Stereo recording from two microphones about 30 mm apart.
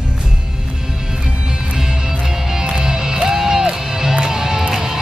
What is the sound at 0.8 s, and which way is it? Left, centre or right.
Music, right.